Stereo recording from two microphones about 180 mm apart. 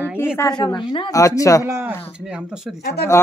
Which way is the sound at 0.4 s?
20° left (ahead or behind).